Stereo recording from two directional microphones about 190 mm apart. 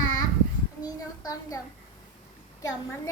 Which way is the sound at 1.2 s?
20° left (ahead or behind).